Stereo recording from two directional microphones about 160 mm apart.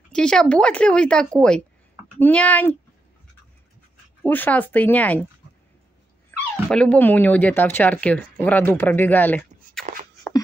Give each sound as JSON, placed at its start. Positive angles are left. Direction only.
{"t": 0.1, "sound": "speech", "side_deg": 5}
{"t": 4.2, "sound": "speech", "side_deg": 10}
{"t": 6.3, "sound": "dog", "side_deg": 10}
{"t": 6.7, "sound": "speech", "side_deg": 5}